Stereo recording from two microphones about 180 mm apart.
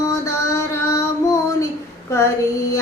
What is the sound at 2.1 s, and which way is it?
Child singing, 15° left (ahead or behind).